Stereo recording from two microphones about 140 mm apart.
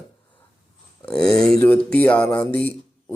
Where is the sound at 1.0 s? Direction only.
5° left (ahead or behind).